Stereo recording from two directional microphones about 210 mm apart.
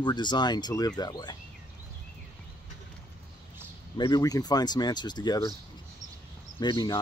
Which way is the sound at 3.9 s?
20° left (ahead or behind).